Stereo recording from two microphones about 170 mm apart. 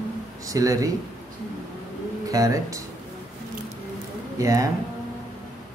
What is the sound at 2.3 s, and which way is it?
Speech, 20° right (ahead or behind).